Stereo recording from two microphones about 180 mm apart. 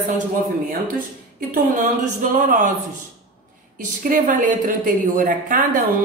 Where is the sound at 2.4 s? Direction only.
45° right (ahead or behind).